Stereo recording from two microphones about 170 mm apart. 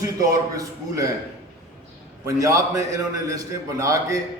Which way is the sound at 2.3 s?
20° right (ahead or behind).